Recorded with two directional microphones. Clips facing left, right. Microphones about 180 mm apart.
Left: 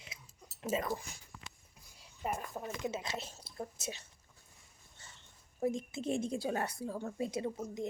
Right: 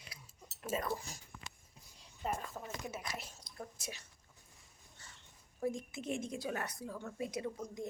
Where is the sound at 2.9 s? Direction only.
25° left (ahead or behind).